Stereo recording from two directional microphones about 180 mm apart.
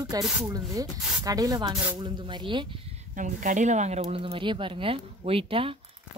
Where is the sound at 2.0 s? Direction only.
25° right (ahead or behind).